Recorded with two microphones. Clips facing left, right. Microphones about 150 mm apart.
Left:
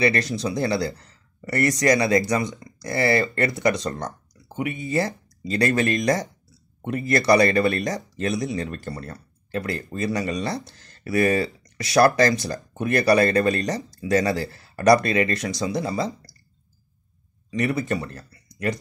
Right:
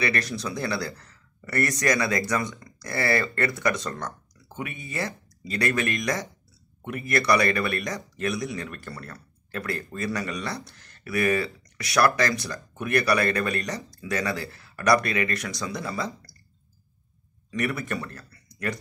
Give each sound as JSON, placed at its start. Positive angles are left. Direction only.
{"t": 0.0, "sound": "speech", "side_deg": 30}
{"t": 17.5, "sound": "speech", "side_deg": 20}